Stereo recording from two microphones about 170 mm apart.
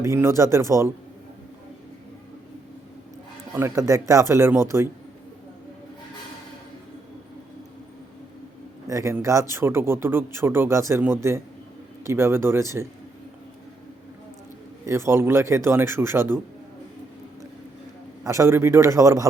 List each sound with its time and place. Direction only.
0.0 s speech: 15° right (ahead or behind)
3.5 s speech: 15° right (ahead or behind)
8.9 s speech: 15° right (ahead or behind)
14.8 s speech: 15° right (ahead or behind)
18.2 s speech: 20° right (ahead or behind)